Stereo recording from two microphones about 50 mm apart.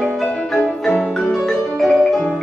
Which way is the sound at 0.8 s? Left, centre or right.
Left.